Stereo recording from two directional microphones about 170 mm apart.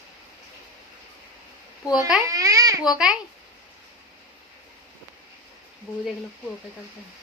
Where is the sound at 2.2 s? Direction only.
20° right (ahead or behind).